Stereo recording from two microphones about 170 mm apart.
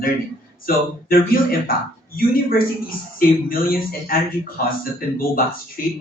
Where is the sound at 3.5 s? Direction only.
55° left (ahead or behind).